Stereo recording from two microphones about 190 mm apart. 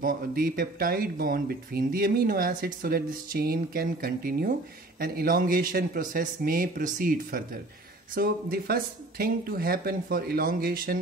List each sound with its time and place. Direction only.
0.0 s speech: 50° right (ahead or behind)